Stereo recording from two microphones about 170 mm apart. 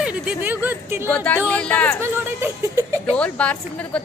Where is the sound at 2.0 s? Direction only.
15° right (ahead or behind).